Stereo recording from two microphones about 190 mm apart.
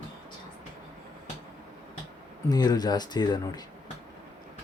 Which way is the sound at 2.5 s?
20° left (ahead or behind).